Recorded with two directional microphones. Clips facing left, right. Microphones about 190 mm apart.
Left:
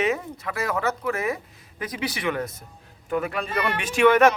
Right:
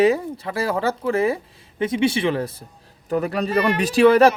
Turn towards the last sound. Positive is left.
turn(degrees=-35)  # may be behind; listen again after turning